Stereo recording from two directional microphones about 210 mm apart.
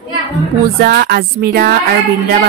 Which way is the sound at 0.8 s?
50° right (ahead or behind).